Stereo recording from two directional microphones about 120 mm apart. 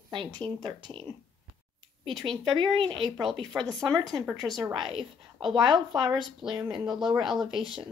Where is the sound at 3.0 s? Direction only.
Centre (ahead or behind).